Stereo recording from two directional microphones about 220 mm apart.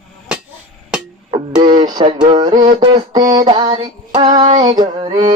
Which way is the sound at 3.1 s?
20° right (ahead or behind).